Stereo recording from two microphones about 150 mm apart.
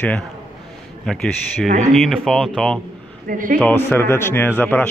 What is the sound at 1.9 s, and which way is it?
A man's voice, centre (ahead or behind).